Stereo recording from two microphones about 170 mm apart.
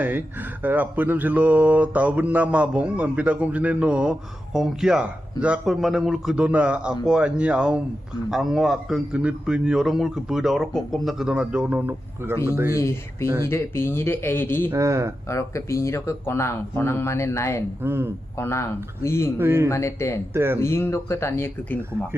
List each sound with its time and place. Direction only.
0.0 s a man's voice: 10° right (ahead or behind)
12.7 s speech: 15° left (ahead or behind)
13.2 s speech: 20° right (ahead or behind)
13.5 s speech: 15° left (ahead or behind)
14.7 s speech: 15° right (ahead or behind)
15.3 s speech: 15° left (ahead or behind)
17.8 s speech: 15° right (ahead or behind)
18.3 s speech: 15° left (ahead or behind)
19.4 s speech: 15° right (ahead or behind)
19.7 s speech: 15° left (ahead or behind)
20.3 s speech: 15° right (ahead or behind)
20.6 s speech: 15° left (ahead or behind)